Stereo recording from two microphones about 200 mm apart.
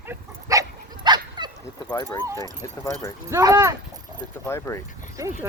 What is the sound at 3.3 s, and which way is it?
Speech, 15° right (ahead or behind).